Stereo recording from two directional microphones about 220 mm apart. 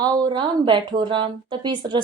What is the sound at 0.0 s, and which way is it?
Speech, 20° right (ahead or behind).